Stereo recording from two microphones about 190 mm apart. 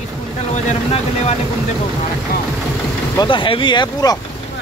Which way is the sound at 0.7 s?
35° left (ahead or behind).